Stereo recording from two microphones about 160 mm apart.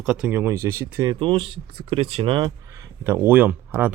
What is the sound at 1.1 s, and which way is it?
Speech, 30° right (ahead or behind).